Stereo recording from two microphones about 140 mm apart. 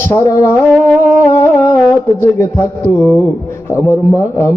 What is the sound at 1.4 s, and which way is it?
Music, 20° left (ahead or behind).